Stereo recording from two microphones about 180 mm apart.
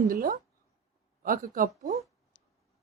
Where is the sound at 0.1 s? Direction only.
50° right (ahead or behind).